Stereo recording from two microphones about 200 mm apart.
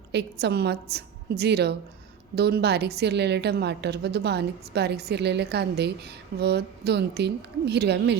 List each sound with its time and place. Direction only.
0.1 s a woman's voice: 60° right (ahead or behind)